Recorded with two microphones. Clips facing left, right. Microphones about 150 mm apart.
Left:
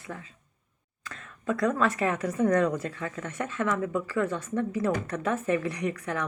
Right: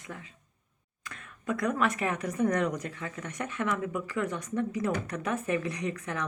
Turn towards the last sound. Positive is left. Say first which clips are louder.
# left 3 dB
turn(degrees=-20)  # may be behind; listen again after turning